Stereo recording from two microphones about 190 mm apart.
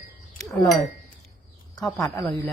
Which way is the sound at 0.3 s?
Centre (ahead or behind).